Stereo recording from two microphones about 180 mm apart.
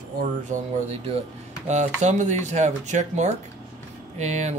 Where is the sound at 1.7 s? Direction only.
40° right (ahead or behind).